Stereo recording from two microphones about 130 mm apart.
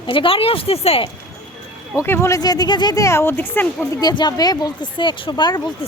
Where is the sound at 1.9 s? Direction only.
20° left (ahead or behind).